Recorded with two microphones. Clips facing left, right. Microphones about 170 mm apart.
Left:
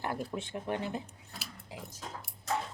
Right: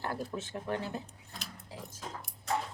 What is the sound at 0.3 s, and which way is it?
Speech, 15° left (ahead or behind).